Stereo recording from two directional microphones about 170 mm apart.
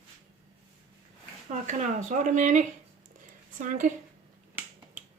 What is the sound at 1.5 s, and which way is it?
Speech, 45° right (ahead or behind).